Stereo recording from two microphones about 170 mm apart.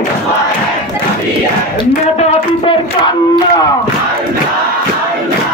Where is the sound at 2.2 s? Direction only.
30° left (ahead or behind).